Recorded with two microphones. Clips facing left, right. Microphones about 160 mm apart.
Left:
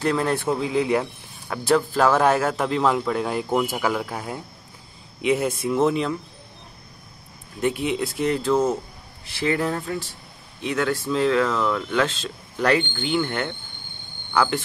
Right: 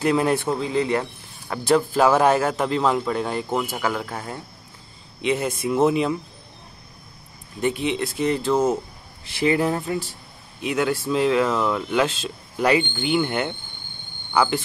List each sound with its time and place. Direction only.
0.0 s speech: 10° right (ahead or behind)
0.4 s a man's voice: 5° left (ahead or behind)
7.6 s a man's voice: 5° left (ahead or behind)
9.4 s speech: 15° right (ahead or behind)